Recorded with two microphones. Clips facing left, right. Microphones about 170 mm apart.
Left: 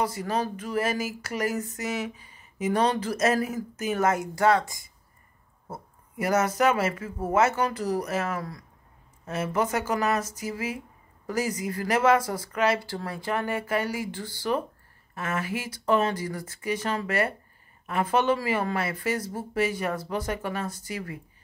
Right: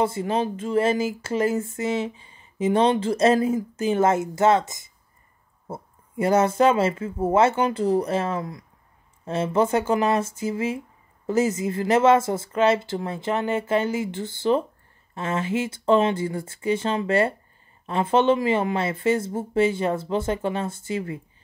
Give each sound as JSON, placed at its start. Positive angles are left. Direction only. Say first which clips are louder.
{"t": 0.0, "sound": "speech", "louder": "right 4 dB", "side_deg": -25}